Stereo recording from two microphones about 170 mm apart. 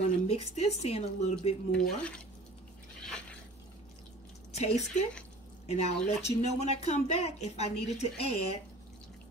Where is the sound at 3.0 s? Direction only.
5° left (ahead or behind).